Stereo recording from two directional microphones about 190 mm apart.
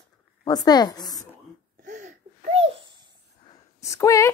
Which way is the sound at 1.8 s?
40° right (ahead or behind).